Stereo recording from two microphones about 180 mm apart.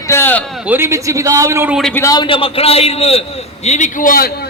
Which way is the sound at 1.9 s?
15° left (ahead or behind).